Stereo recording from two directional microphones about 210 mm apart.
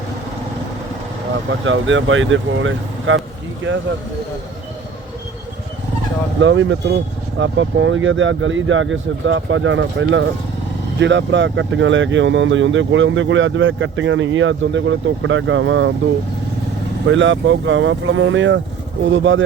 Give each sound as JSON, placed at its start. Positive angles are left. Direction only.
{"t": 1.5, "sound": "speech", "side_deg": -65}
{"t": 6.4, "sound": "speech", "side_deg": -65}
{"t": 17.1, "sound": "speech", "side_deg": -60}